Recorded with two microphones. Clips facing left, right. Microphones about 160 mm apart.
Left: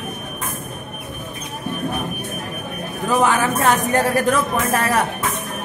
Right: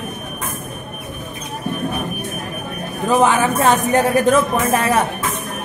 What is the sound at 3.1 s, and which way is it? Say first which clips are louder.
Speech: right 3 dB; 20° right (ahead or behind).